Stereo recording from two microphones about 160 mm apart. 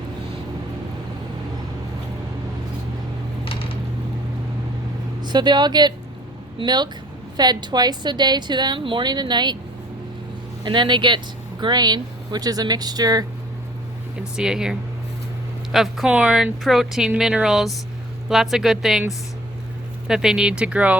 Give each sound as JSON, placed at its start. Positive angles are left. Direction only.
{"t": 3.4, "sound": "a sound", "side_deg": 35}
{"t": 5.2, "sound": "a woman's voice", "side_deg": -25}
{"t": 10.6, "sound": "a woman's voice", "side_deg": -30}
{"t": 14.3, "sound": "speech", "side_deg": -5}
{"t": 20.1, "sound": "speech", "side_deg": -5}